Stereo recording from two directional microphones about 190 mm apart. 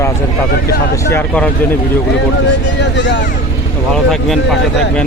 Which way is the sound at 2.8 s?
65° left (ahead or behind).